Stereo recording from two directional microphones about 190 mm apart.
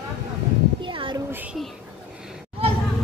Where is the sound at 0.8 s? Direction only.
25° right (ahead or behind).